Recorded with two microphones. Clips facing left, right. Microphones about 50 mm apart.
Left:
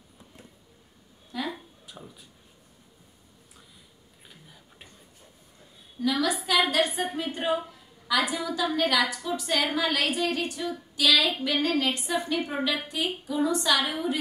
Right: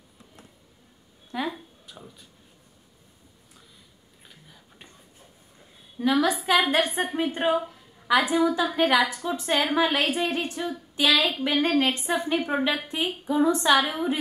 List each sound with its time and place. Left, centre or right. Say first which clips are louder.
1.3 s a woman's voice: right 3 dB; right
1.9 s speech: left 2 dB; centre
4.3 s a sound: even; centre
5.9 s a woman's voice: right 4 dB; right